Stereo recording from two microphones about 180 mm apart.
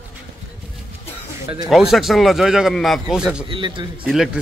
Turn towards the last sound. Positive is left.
turn(degrees=-5)  # may be behind; listen again after turning